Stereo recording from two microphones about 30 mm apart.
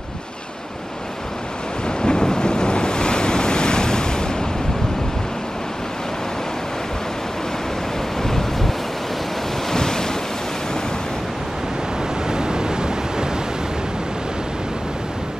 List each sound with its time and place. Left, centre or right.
1.9 s waves: left
8.2 s waves: centre
9.7 s waves: left
12.3 s waves: right